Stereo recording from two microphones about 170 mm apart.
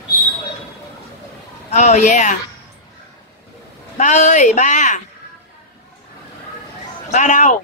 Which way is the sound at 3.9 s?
45° left (ahead or behind).